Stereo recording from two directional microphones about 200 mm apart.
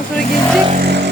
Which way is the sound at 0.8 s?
55° right (ahead or behind).